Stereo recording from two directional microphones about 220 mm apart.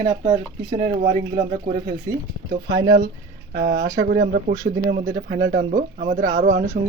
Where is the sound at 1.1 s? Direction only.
35° right (ahead or behind).